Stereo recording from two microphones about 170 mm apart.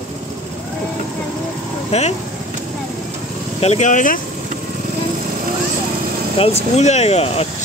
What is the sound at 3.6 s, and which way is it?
Speech, 40° left (ahead or behind).